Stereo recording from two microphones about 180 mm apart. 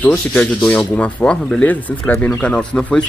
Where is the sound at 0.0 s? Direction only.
10° left (ahead or behind).